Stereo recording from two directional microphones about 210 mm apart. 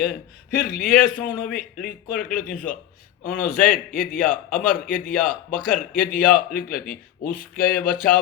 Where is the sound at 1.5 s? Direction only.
45° left (ahead or behind).